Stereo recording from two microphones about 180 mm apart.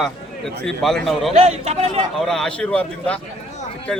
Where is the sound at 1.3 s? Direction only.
35° right (ahead or behind).